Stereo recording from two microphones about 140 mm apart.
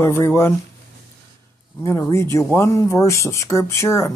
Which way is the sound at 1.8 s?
20° left (ahead or behind).